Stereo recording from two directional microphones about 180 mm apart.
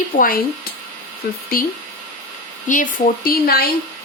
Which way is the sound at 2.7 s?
45° left (ahead or behind).